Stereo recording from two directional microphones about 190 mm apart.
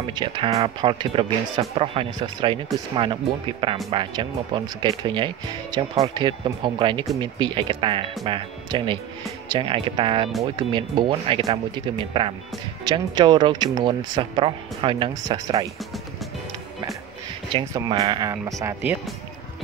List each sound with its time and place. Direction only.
0.1 s speech: 25° right (ahead or behind)
17.7 s speech: 20° right (ahead or behind)